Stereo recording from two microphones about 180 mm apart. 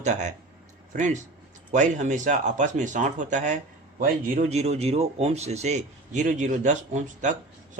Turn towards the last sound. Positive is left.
turn(degrees=-40)  # may be behind; listen again after turning